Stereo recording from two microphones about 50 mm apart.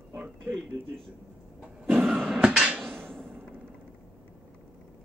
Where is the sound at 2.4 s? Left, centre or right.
Centre.